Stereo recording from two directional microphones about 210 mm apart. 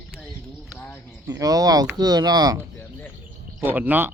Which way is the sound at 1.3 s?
15° right (ahead or behind).